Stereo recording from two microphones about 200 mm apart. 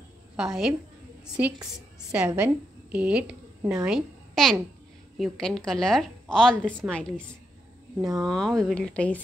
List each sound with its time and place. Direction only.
0.4 s a woman's voice: centre (ahead or behind)
2.0 s a woman's voice: 5° right (ahead or behind)
8.0 s speech: 15° right (ahead or behind)
8.3 s a woman's voice: centre (ahead or behind)